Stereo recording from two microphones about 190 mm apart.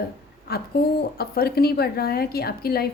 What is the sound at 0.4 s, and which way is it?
A woman's voice, 55° left (ahead or behind).